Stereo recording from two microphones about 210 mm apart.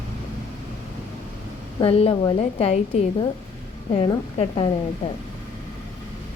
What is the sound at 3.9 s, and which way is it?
Speech, 25° left (ahead or behind).